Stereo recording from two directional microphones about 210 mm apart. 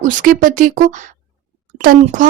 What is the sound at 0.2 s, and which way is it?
Speech, 40° right (ahead or behind).